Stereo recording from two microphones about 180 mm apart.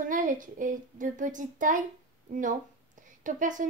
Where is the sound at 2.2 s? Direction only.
45° right (ahead or behind).